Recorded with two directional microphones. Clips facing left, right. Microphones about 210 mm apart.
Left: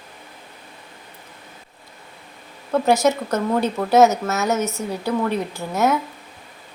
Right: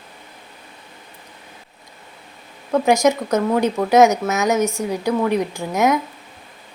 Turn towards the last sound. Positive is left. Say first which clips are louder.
# right 2 dB
turn(degrees=-15)  # may be behind; listen again after turning